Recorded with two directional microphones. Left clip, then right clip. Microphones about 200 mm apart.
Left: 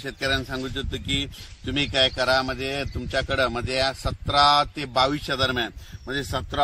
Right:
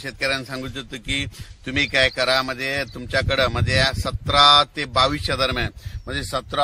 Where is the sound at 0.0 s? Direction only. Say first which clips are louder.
Right 2 dB; 25° right (ahead or behind).